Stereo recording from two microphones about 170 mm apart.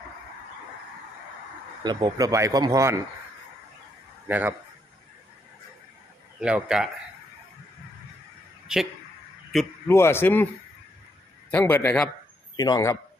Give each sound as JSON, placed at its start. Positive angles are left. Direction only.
{"t": 1.8, "sound": "speech", "side_deg": -25}
{"t": 4.3, "sound": "a man's voice", "side_deg": -10}
{"t": 6.4, "sound": "speech", "side_deg": -5}
{"t": 8.7, "sound": "speech", "side_deg": -5}
{"t": 9.8, "sound": "a man's voice", "side_deg": 15}
{"t": 11.5, "sound": "a man's voice", "side_deg": 10}
{"t": 12.5, "sound": "a man's voice", "side_deg": 25}